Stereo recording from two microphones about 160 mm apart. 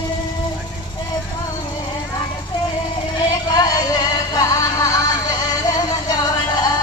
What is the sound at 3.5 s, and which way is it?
Music, 25° left (ahead or behind).